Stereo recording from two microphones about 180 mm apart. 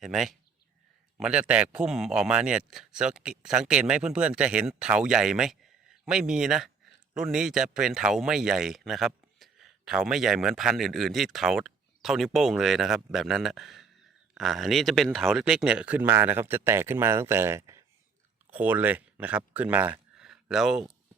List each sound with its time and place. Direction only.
0.0 s speech: centre (ahead or behind)